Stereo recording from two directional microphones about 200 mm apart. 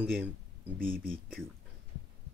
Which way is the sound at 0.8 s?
45° right (ahead or behind).